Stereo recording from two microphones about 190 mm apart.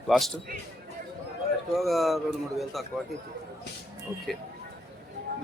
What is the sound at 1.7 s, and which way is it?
Speech, centre (ahead or behind).